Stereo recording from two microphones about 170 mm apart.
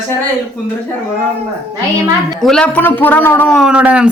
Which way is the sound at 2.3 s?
5° left (ahead or behind).